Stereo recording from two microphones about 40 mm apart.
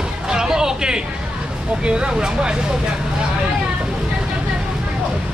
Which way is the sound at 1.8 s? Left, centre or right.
Right.